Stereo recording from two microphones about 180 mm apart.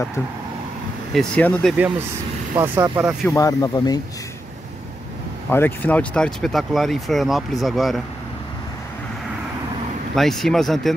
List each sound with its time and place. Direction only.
1.1 s speech: 5° left (ahead or behind)
2.5 s speech: 15° right (ahead or behind)
3.3 s speech: 20° left (ahead or behind)
5.5 s speech: 10° left (ahead or behind)
10.1 s speech: centre (ahead or behind)